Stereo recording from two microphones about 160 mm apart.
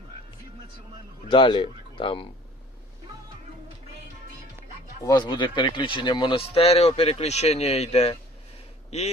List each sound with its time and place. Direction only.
1.3 s speech: 30° left (ahead or behind)
5.0 s speech: 25° left (ahead or behind); by 9.1 s 45° left (ahead or behind)